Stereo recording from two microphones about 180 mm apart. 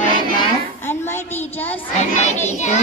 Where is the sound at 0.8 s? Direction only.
10° left (ahead or behind).